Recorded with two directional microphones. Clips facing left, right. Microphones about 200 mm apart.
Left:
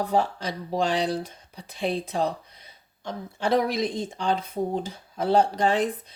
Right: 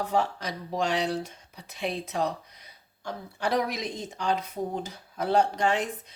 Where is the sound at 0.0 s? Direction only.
35° left (ahead or behind).